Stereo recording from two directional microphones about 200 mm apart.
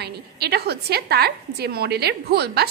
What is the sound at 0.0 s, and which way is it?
A woman's voice, 55° right (ahead or behind).